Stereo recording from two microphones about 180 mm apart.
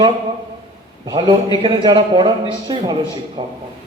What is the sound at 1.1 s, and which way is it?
Speech, 25° right (ahead or behind).